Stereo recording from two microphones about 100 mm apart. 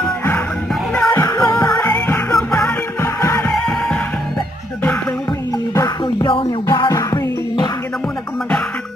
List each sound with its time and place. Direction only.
1.0 s music: 35° left (ahead or behind)
1.9 s music: 20° left (ahead or behind)
3.5 s music: centre (ahead or behind)
6.2 s music: 55° left (ahead or behind)
6.9 s music: 40° left (ahead or behind)